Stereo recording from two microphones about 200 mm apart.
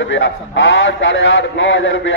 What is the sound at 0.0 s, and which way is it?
A man's voice, 75° left (ahead or behind).